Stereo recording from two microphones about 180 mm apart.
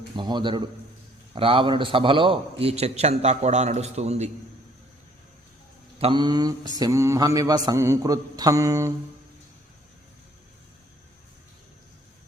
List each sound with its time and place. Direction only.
0.2 s mantra: 25° right (ahead or behind)
1.4 s a man's voice: 30° right (ahead or behind)
6.0 s mantra: 25° right (ahead or behind)